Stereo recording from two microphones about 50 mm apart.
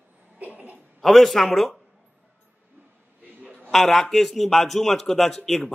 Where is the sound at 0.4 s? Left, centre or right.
Right.